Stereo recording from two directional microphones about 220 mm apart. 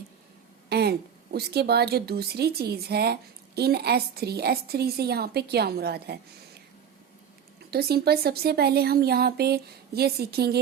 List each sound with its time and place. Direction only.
0.7 s a woman's voice: 45° right (ahead or behind)
7.7 s a woman's voice: 45° right (ahead or behind)